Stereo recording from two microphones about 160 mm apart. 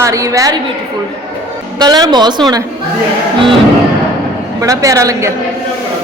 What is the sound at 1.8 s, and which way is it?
Speech, 25° right (ahead or behind).